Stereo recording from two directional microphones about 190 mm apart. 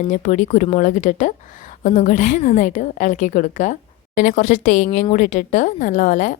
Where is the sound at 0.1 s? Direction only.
40° left (ahead or behind).